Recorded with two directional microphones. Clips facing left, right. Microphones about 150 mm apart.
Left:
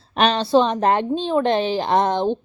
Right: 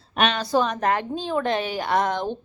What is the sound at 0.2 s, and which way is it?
A woman's voice, 30° left (ahead or behind).